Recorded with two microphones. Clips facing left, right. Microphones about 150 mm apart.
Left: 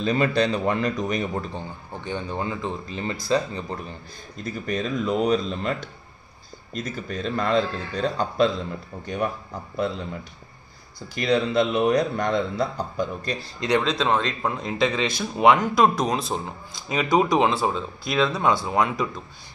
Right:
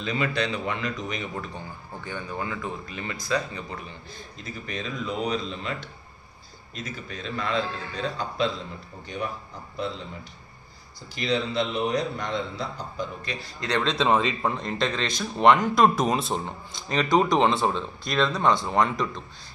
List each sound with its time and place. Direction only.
0.0 s speech: 40° left (ahead or behind)
2.0 s speech: 25° left (ahead or behind)
4.6 s a man's voice: 45° left (ahead or behind)
11.1 s a man's voice: 50° left (ahead or behind)
13.6 s speech: 15° left (ahead or behind)
13.8 s a man's voice: centre (ahead or behind)